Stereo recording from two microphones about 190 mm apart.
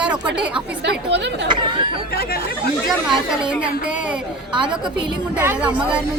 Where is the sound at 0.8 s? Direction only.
65° right (ahead or behind).